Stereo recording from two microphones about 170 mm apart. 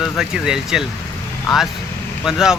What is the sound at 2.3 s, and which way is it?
Speech, 5° right (ahead or behind).